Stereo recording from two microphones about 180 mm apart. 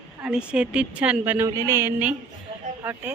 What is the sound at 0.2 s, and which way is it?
A woman's voice, 5° right (ahead or behind).